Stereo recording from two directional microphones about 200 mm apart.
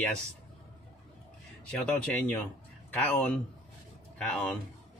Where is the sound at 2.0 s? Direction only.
5° left (ahead or behind).